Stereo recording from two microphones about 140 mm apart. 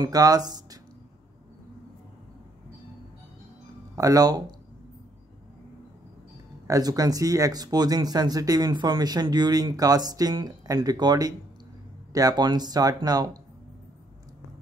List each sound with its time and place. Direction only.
0.0 s speech: 25° right (ahead or behind)
3.9 s speech: 25° right (ahead or behind)
6.7 s speech: 25° right (ahead or behind)